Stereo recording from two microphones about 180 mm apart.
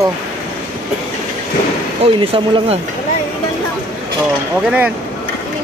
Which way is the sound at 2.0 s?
35° right (ahead or behind).